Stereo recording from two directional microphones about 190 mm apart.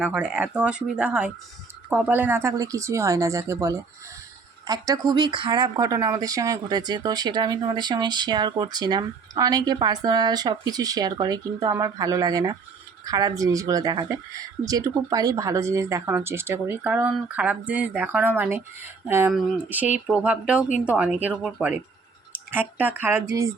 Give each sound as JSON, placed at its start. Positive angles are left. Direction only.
{"t": 0.0, "sound": "speech", "side_deg": -5}